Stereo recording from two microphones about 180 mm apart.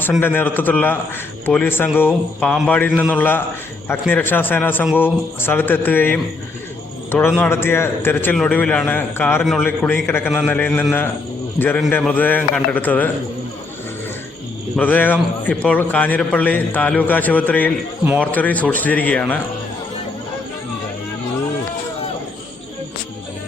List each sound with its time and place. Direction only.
0.2 s a man's voice: 10° left (ahead or behind)
11.9 s a man's voice: 10° left (ahead or behind)
14.8 s a man's voice: 10° left (ahead or behind)